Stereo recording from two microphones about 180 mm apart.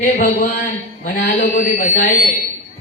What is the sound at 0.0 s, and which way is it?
A woman's voice, 50° left (ahead or behind).